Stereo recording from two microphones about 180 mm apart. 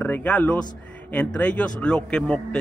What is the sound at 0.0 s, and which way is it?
A man's voice, 10° left (ahead or behind).